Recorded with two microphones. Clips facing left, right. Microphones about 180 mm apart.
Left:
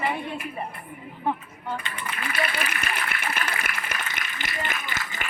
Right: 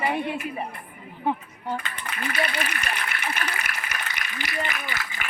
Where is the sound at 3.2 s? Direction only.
50° left (ahead or behind).